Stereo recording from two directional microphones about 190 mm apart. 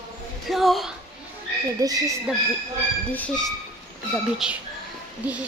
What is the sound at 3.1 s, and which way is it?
Speech, 5° left (ahead or behind).